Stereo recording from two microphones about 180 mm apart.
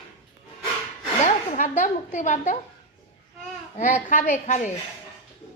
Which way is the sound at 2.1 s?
40° left (ahead or behind).